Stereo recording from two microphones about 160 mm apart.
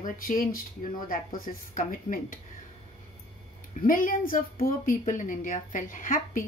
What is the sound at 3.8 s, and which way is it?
A woman's voice, 60° left (ahead or behind).